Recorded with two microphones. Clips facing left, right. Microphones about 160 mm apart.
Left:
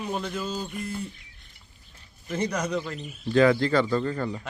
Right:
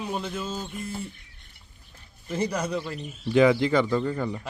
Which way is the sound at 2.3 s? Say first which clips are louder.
Even; 10° right (ahead or behind).